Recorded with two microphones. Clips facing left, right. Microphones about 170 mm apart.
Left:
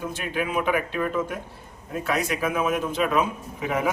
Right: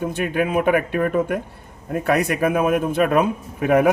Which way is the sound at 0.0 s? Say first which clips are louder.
Right 7 dB; 55° right (ahead or behind).